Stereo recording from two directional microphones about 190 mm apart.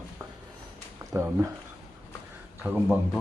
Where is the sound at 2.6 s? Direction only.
10° right (ahead or behind).